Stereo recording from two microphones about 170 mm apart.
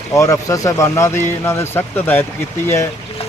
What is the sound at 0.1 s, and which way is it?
Speech, 20° left (ahead or behind).